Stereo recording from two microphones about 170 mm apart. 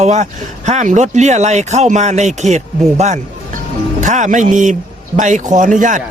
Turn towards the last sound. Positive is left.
turn(degrees=-50)  # may be behind; listen again after turning